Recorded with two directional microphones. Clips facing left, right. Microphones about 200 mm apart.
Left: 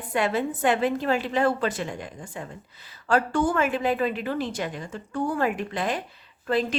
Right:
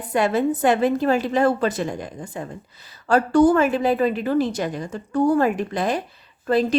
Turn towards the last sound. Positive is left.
turn(degrees=-40)  # may be behind; listen again after turning